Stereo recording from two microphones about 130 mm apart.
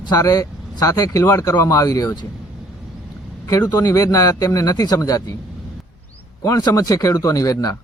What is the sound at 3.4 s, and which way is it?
Speech, 25° left (ahead or behind).